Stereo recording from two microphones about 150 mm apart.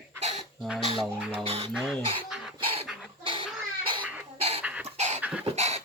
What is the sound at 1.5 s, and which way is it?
Speech, 40° right (ahead or behind).